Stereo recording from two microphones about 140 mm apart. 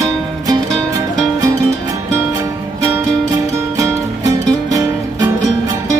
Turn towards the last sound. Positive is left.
turn(degrees=-25)  # may be behind; listen again after turning